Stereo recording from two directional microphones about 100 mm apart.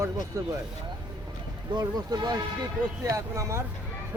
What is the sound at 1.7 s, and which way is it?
Speech, 40° right (ahead or behind).